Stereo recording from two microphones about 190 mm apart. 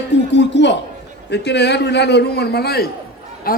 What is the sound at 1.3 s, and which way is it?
A man's voice, 60° left (ahead or behind).